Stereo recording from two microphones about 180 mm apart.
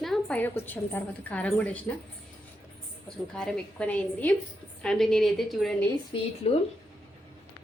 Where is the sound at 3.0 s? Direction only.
5° left (ahead or behind).